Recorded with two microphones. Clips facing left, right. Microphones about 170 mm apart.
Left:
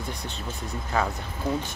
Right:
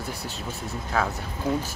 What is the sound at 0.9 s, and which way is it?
Speech, centre (ahead or behind).